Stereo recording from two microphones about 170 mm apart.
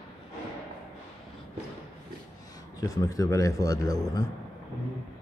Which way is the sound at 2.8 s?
20° left (ahead or behind).